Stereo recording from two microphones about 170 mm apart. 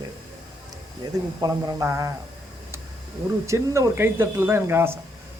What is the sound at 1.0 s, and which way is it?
Speech, 25° right (ahead or behind).